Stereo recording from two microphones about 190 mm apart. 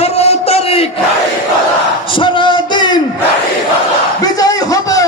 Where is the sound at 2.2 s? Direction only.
25° left (ahead or behind).